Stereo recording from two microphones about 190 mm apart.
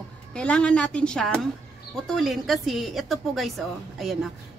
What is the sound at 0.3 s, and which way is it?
A woman's voice, 5° left (ahead or behind).